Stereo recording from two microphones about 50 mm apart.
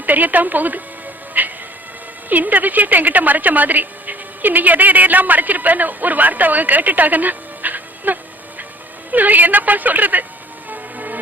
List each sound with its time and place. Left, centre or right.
0.0 s a woman's voice: right
1.3 s music: right
2.3 s a woman's voice: right
10.7 s music: right